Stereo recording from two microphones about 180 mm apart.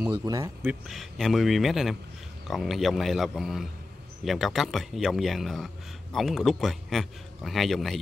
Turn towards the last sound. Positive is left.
turn(degrees=0)  # may be behind; listen again after turning